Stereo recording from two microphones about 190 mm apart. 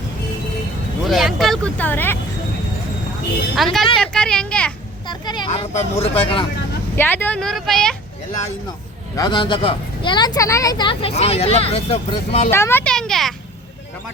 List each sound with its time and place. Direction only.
1.0 s vehicle: centre (ahead or behind)
3.5 s speech: centre (ahead or behind)
5.0 s a sound: 25° left (ahead or behind)
5.5 s speech: 35° left (ahead or behind)
6.9 s speech: 10° left (ahead or behind)
9.1 s speech: 20° left (ahead or behind)
12.5 s speech: 15° left (ahead or behind)